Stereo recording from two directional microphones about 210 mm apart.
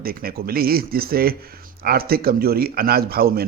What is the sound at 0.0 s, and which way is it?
A man's voice, 45° right (ahead or behind).